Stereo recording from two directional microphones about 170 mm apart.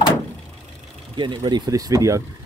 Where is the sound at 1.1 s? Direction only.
25° right (ahead or behind).